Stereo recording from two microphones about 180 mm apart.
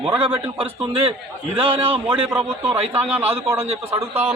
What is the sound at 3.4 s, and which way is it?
Speech, 15° right (ahead or behind).